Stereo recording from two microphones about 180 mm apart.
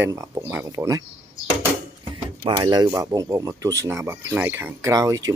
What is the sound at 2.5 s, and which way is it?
Speech, 20° right (ahead or behind).